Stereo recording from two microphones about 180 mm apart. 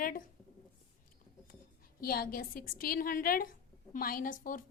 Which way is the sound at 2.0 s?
55° left (ahead or behind).